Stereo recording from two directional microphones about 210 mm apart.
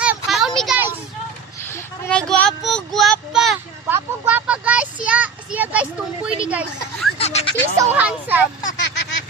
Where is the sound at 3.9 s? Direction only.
10° right (ahead or behind).